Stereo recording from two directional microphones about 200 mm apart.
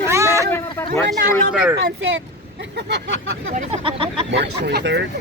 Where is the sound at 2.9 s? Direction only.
70° right (ahead or behind).